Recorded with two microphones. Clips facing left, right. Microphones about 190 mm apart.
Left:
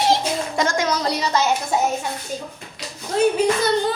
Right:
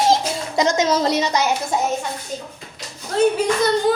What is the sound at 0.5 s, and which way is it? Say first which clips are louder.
Speech: right 6 dB; 20° right (ahead or behind).